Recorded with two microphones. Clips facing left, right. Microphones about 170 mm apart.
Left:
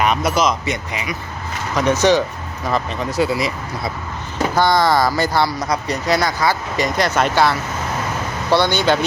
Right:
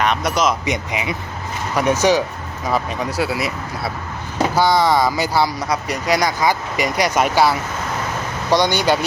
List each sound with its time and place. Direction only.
0.0 s speech: 5° left (ahead or behind)
0.6 s speech: 15° right (ahead or behind)